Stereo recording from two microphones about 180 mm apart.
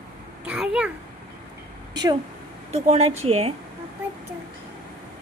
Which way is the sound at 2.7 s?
35° right (ahead or behind).